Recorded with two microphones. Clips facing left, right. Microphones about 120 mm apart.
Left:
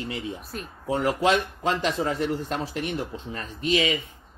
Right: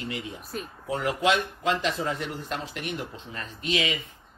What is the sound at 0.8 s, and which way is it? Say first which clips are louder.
Speech: left 3 dB; 35° left (ahead or behind).